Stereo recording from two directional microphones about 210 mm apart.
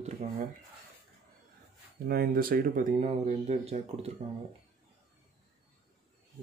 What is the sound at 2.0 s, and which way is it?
Speech, 45° right (ahead or behind).